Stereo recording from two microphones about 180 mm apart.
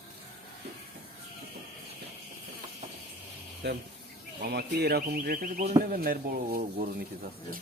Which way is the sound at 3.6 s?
65° right (ahead or behind).